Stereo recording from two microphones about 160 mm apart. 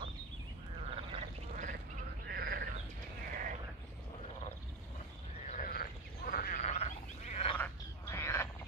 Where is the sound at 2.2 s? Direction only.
75° right (ahead or behind).